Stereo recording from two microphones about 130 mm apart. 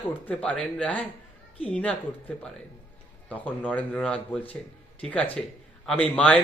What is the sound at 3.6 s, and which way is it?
Speech, 10° left (ahead or behind).